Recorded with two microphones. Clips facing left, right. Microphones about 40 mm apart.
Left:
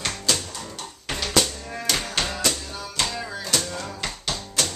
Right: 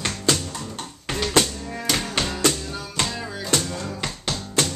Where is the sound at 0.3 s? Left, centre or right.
Right.